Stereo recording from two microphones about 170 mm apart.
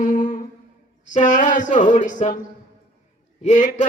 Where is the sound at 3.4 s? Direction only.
45° left (ahead or behind).